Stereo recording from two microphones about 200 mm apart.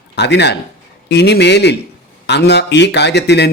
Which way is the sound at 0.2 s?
60° left (ahead or behind).